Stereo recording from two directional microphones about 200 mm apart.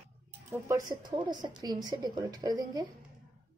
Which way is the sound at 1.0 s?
20° right (ahead or behind).